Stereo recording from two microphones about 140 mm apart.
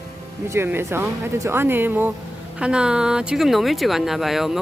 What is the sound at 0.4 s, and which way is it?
Speech, 20° right (ahead or behind).